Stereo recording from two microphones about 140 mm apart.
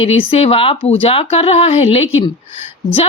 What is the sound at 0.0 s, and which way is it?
A woman's voice, 45° left (ahead or behind).